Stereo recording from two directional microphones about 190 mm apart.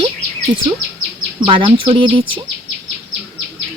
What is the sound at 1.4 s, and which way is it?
Speech, 25° right (ahead or behind).